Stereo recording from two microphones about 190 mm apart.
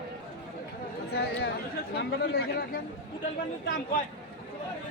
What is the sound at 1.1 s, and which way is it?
Speech, 55° left (ahead or behind).